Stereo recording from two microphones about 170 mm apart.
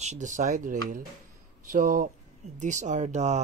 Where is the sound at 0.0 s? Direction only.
45° right (ahead or behind).